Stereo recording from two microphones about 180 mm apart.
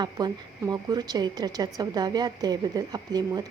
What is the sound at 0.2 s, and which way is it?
A woman's voice, 25° right (ahead or behind).